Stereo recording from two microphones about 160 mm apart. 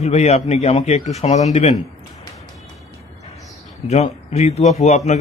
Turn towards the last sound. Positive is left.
turn(degrees=45)  # may be behind; listen again after turning